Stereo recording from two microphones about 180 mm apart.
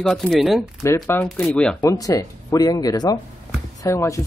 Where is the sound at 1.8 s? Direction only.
20° left (ahead or behind).